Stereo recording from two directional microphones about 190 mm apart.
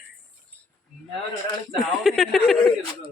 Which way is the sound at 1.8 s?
Centre (ahead or behind).